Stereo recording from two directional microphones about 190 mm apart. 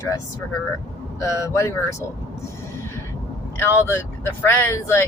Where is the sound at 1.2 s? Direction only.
15° left (ahead or behind).